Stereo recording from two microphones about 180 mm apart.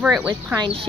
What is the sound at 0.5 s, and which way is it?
Speech, 30° right (ahead or behind).